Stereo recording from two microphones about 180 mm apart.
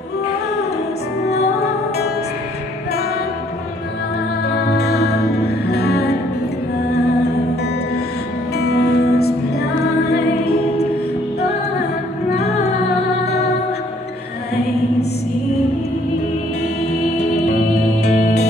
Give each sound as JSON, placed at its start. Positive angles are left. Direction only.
{"t": 1.3, "sound": "music", "side_deg": 65}
{"t": 4.6, "sound": "music", "side_deg": 65}
{"t": 8.5, "sound": "music", "side_deg": 60}